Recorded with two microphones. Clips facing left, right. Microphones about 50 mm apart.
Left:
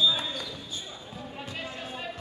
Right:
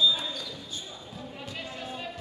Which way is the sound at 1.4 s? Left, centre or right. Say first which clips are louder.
Left 1 dB; left.